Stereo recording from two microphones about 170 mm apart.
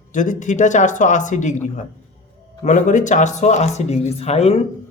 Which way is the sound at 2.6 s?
45° left (ahead or behind).